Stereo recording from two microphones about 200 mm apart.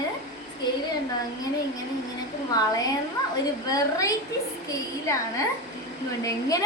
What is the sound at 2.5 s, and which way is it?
A woman's voice, 20° left (ahead or behind).